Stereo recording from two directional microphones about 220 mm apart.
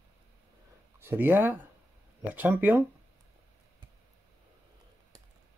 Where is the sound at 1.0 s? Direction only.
10° right (ahead or behind).